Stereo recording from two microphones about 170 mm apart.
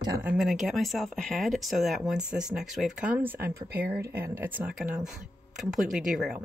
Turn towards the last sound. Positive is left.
turn(degrees=-5)  # may be behind; listen again after turning